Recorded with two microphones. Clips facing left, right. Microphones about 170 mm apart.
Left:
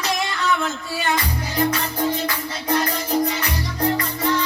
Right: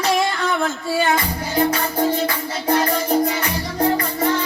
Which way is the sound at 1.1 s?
30° right (ahead or behind).